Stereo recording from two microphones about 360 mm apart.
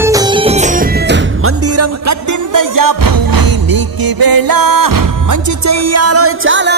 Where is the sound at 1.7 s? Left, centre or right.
Right.